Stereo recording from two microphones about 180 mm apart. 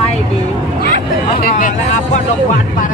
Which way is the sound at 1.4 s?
45° left (ahead or behind).